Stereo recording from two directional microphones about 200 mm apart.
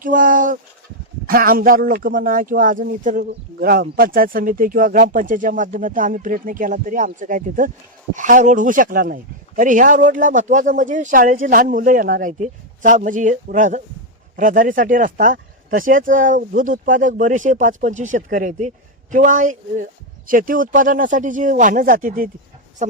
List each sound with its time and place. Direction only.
0.0 s speech: 40° right (ahead or behind)